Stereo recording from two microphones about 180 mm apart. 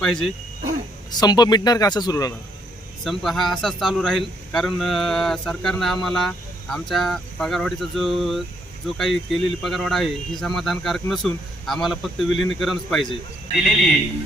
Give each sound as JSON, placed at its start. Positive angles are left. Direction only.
{"t": 0.0, "sound": "speech", "side_deg": 5}
{"t": 1.1, "sound": "speech", "side_deg": 25}
{"t": 3.0, "sound": "speech", "side_deg": 0}